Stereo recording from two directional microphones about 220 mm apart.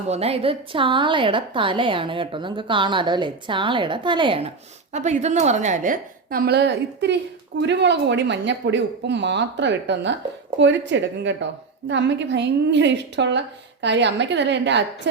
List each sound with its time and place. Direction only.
0.1 s a woman's voice: 30° right (ahead or behind); by 14.8 s 50° right (ahead or behind)